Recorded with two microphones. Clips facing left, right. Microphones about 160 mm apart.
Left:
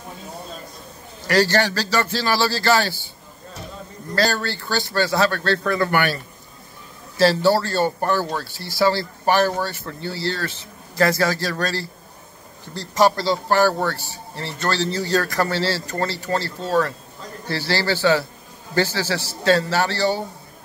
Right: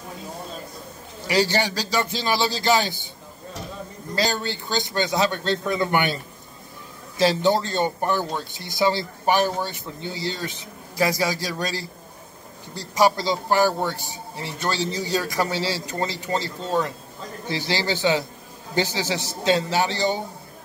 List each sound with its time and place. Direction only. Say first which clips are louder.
1.2 s speech: left 3 dB; 10° right (ahead or behind)
4.1 s speech: left 3 dB; 15° right (ahead or behind)